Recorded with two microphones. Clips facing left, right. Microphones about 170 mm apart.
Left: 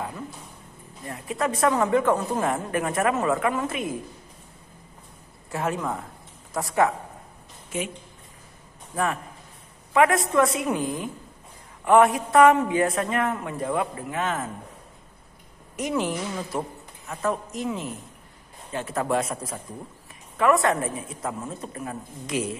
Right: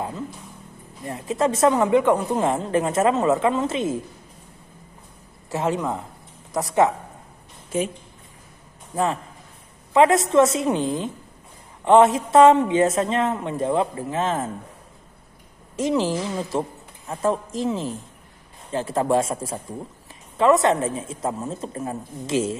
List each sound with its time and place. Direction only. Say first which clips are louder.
1.0 s a woman's voice: right 5 dB; 25° right (ahead or behind)
5.5 s a woman's voice: right 4 dB; 25° right (ahead or behind)
8.9 s a woman's voice: right 3 dB; 25° right (ahead or behind)
15.7 s a woman's voice: right 5 dB; 25° right (ahead or behind)